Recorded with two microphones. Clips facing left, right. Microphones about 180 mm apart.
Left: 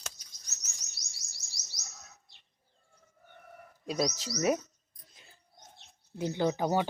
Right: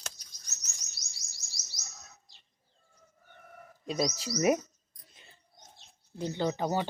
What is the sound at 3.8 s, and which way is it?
Speech, 5° right (ahead or behind).